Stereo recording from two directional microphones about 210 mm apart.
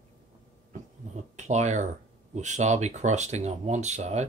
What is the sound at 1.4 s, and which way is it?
Speech, 35° right (ahead or behind).